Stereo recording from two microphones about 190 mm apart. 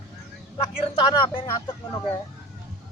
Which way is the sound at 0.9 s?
25° left (ahead or behind).